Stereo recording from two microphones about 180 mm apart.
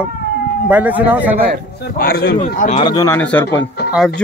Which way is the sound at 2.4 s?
45° left (ahead or behind).